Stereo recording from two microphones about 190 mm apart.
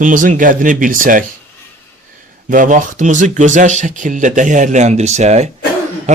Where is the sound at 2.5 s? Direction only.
45° right (ahead or behind).